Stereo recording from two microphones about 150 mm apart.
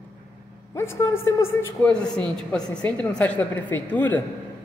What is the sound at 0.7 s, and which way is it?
A woman's voice, 15° left (ahead or behind).